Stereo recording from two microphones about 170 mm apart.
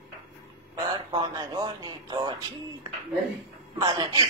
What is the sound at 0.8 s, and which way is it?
Speech, 25° right (ahead or behind).